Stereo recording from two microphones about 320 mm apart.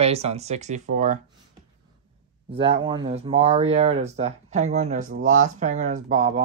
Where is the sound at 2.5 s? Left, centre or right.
Centre.